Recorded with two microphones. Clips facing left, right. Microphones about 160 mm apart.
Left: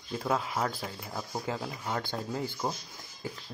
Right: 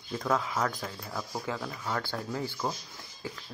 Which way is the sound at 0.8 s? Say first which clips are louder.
Right 1 dB; 20° left (ahead or behind).